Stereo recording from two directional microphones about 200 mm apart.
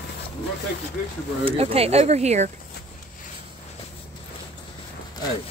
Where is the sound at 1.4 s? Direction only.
30° right (ahead or behind).